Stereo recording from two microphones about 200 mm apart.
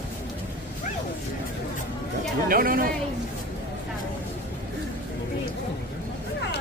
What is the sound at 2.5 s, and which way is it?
Speech, 45° right (ahead or behind).